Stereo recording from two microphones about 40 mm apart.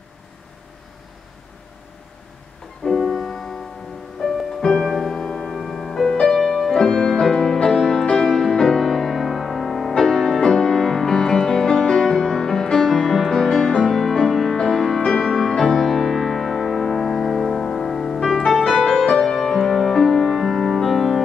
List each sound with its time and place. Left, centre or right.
2.8 s music: left
3.2 s music: centre
5.1 s music: centre
5.5 s music: centre
6.8 s music: centre
7.2 s music: centre
15.0 s music: centre
19.0 s music: centre